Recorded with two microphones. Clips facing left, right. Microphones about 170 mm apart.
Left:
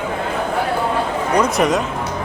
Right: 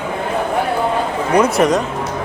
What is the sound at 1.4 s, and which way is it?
Speech, centre (ahead or behind).